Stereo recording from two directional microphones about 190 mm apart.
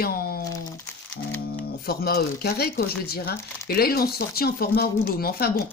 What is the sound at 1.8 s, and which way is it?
A woman's voice, 55° left (ahead or behind).